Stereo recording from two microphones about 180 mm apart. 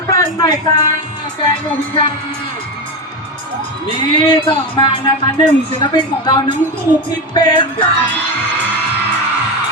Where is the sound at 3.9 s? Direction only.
30° left (ahead or behind).